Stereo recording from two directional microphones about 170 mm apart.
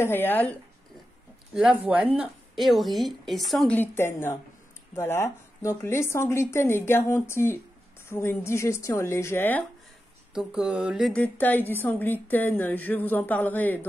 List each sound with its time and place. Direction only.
0.0 s speech: 10° left (ahead or behind)
1.5 s a woman's voice: 5° right (ahead or behind); by 9.7 s 10° left (ahead or behind)
10.3 s a woman's voice: 5° right (ahead or behind)
11.2 s speech: 10° left (ahead or behind)